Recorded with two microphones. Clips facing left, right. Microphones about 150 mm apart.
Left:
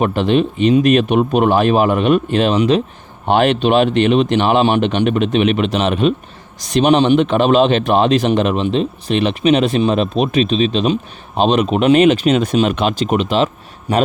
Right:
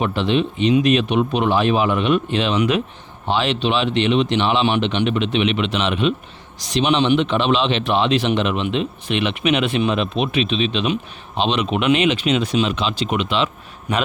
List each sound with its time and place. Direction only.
0.0 s speech: 45° left (ahead or behind)
2.6 s a man's voice: 35° left (ahead or behind)
3.2 s a man's voice: 50° left (ahead or behind); by 14.0 s 35° left (ahead or behind)